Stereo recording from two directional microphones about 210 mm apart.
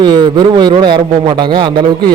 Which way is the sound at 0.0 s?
20° right (ahead or behind).